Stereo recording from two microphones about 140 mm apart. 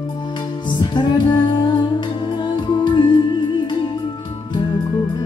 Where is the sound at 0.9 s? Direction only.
30° left (ahead or behind).